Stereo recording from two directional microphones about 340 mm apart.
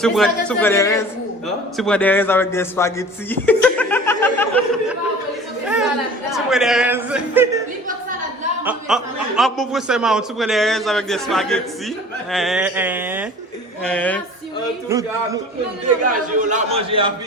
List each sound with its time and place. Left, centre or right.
0.0 s a man's voice: centre
5.6 s chatter: centre
6.3 s a sound: centre
8.6 s a man's voice: centre
14.8 s a man's voice: centre
16.4 s a man's voice: right